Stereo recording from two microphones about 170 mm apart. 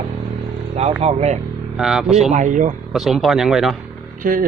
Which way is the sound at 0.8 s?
40° right (ahead or behind).